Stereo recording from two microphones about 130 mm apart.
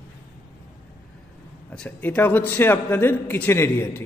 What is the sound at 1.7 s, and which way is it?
A man's voice, 10° left (ahead or behind).